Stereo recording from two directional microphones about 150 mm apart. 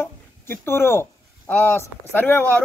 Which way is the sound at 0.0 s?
15° left (ahead or behind).